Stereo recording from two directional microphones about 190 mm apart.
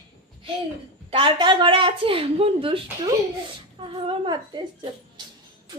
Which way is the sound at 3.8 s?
25° right (ahead or behind).